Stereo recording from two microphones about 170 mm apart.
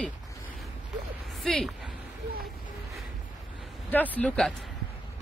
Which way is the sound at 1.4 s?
Centre (ahead or behind).